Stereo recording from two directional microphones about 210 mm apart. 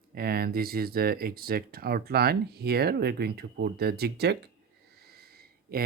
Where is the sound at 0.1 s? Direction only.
45° right (ahead or behind).